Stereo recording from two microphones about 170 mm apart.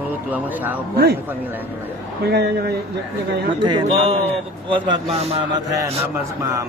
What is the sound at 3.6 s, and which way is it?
A man's voice, 30° right (ahead or behind).